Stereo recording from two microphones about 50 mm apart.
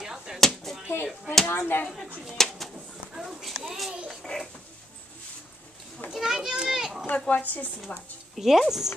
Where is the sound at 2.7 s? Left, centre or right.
Centre.